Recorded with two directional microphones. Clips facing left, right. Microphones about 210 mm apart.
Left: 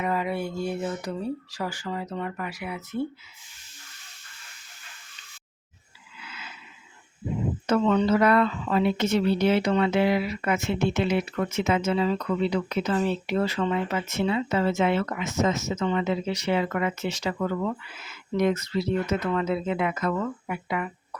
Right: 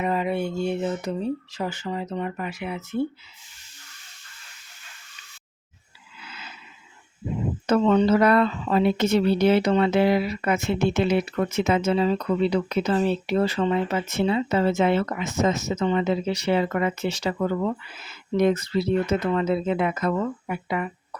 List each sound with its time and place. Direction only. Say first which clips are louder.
0.0 s speech: right 3 dB; 25° right (ahead or behind)
6.2 s a sound: right 1 dB; 35° right (ahead or behind)
7.7 s speech: right 3 dB; 35° right (ahead or behind)